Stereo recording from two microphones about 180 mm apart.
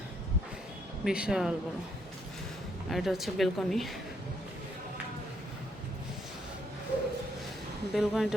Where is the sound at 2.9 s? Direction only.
Centre (ahead or behind).